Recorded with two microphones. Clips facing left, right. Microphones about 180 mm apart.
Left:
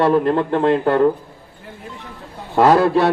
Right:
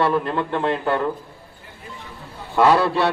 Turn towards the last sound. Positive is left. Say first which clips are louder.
# left 4 dB
turn(degrees=45)  # may be behind; listen again after turning